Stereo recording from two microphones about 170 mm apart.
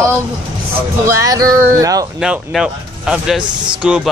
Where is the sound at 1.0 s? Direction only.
20° right (ahead or behind).